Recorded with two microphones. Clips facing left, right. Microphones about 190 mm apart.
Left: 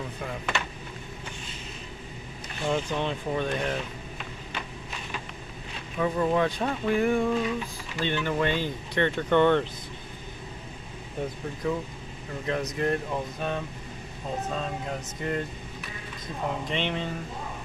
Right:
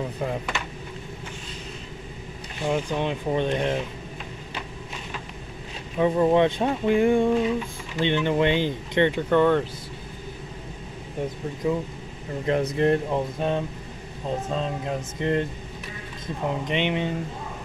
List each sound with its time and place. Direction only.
2.6 s speech: 15° right (ahead or behind)
5.9 s speech: 25° right (ahead or behind)
9.3 s speech: 5° right (ahead or behind)
11.6 s speech: 20° right (ahead or behind)
12.4 s speech: 30° right (ahead or behind)
16.6 s speech: 15° right (ahead or behind)